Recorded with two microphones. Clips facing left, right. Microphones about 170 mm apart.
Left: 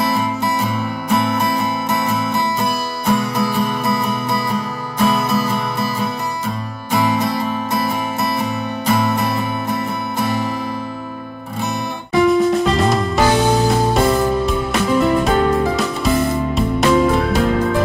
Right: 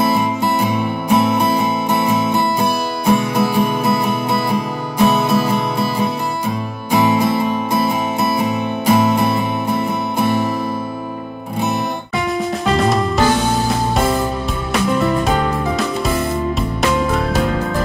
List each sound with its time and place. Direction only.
0.1 s music: 15° right (ahead or behind)
12.3 s music: centre (ahead or behind)
14.7 s music: centre (ahead or behind)